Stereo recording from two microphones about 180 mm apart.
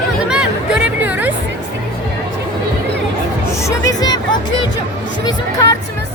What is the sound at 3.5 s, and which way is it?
Hubbub, 15° left (ahead or behind).